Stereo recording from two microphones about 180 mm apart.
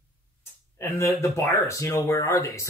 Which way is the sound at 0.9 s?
15° left (ahead or behind).